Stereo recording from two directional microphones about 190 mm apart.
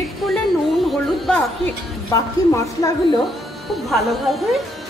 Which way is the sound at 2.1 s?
15° left (ahead or behind).